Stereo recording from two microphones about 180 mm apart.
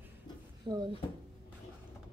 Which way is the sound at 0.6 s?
25° right (ahead or behind).